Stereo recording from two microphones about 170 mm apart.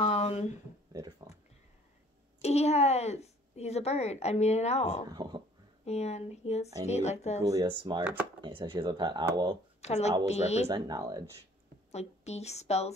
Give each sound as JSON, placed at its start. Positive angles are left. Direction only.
{"t": 0.0, "sound": "a sound", "side_deg": 35}
{"t": 0.9, "sound": "a sound", "side_deg": -20}
{"t": 2.4, "sound": "a woman's voice", "side_deg": 40}
{"t": 5.1, "sound": "a sound", "side_deg": -25}
{"t": 5.9, "sound": "a woman's voice", "side_deg": 40}
{"t": 7.4, "sound": "speech", "side_deg": -25}
{"t": 8.0, "sound": "speech", "side_deg": -10}
{"t": 8.4, "sound": "speech", "side_deg": -30}
{"t": 9.8, "sound": "a woman's voice", "side_deg": 40}
{"t": 10.7, "sound": "speech", "side_deg": -20}
{"t": 11.9, "sound": "a woman's voice", "side_deg": 40}